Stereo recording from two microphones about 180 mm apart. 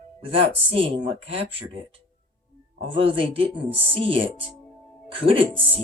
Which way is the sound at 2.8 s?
30° right (ahead or behind).